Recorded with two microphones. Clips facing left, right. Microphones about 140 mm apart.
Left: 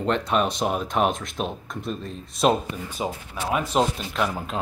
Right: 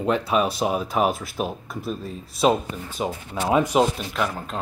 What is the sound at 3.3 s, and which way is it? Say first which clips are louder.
Speech: right 8 dB; 25° right (ahead or behind).